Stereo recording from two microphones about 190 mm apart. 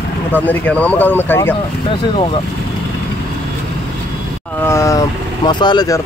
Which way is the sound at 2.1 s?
25° left (ahead or behind).